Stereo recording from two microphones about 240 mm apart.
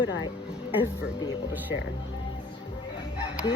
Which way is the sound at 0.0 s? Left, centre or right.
Left.